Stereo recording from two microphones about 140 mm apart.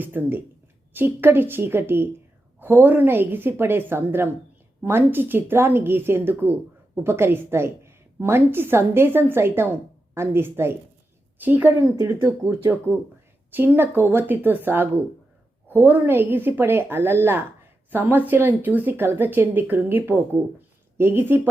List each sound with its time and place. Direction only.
0.0 s a woman's voice: 15° right (ahead or behind)
11.8 s a woman's voice: 25° right (ahead or behind)